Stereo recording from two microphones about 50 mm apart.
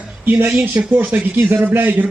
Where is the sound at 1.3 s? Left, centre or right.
Right.